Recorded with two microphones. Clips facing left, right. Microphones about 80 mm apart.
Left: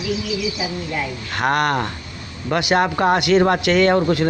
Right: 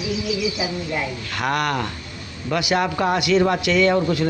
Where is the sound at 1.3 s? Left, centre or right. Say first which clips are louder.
Left 4 dB; left.